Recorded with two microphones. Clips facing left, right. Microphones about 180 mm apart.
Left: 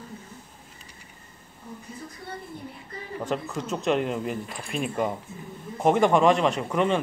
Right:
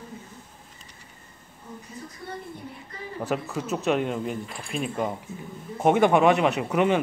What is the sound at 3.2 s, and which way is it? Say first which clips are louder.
Speech: right 1 dB; 5° right (ahead or behind).